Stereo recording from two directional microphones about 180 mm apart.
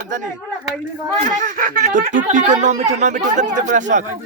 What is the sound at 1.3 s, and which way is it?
Speech, 50° right (ahead or behind).